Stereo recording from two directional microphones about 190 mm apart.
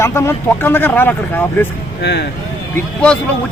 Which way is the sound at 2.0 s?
65° left (ahead or behind).